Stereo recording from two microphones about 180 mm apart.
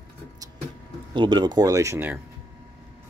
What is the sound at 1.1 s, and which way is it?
Speech, 25° right (ahead or behind).